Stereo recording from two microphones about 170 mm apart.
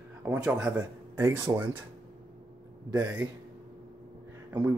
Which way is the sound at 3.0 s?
10° right (ahead or behind).